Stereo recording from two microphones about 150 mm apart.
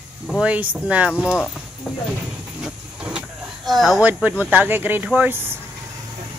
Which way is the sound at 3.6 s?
Centre (ahead or behind).